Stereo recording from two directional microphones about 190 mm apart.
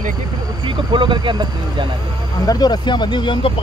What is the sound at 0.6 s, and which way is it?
Speech, 25° right (ahead or behind).